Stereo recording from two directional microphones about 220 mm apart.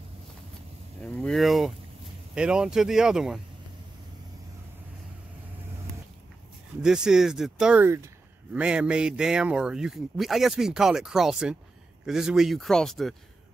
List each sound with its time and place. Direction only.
1.0 s speech: 5° left (ahead or behind)
6.8 s speech: 5° right (ahead or behind)